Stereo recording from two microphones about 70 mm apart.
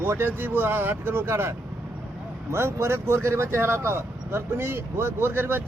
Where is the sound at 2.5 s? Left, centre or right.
Right.